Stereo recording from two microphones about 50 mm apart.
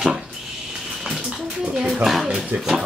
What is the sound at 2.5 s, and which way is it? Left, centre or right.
Speech, right.